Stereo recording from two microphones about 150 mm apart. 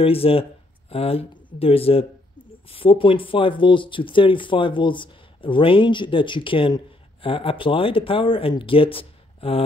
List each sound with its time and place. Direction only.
0.0 s speech: 40° left (ahead or behind)